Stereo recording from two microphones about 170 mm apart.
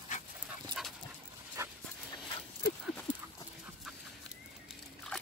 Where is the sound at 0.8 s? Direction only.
5° right (ahead or behind).